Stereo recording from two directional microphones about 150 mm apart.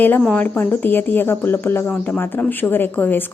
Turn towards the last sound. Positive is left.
turn(degrees=10)  # may be behind; listen again after turning